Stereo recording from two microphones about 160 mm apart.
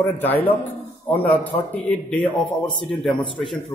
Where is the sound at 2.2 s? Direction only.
30° left (ahead or behind).